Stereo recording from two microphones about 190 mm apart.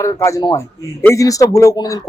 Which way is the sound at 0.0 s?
15° left (ahead or behind).